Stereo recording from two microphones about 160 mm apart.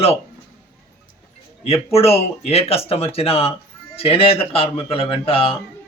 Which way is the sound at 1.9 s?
40° left (ahead or behind).